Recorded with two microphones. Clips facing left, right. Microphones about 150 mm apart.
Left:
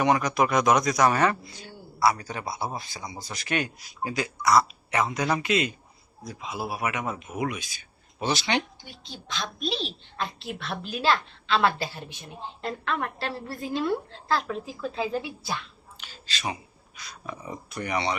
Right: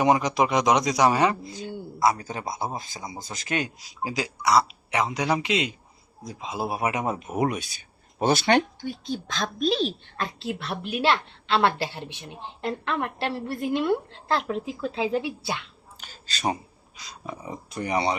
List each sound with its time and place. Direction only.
0.0 s a woman's voice: 20° right (ahead or behind); by 7.6 s 40° right (ahead or behind)
8.2 s speech: 50° right (ahead or behind)
10.4 s a woman's voice: 25° right (ahead or behind)
16.0 s a sound: 40° right (ahead or behind)
17.2 s a woman's voice: 25° right (ahead or behind)